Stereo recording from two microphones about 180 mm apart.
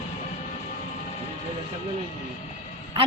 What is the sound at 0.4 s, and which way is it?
Music, 45° left (ahead or behind).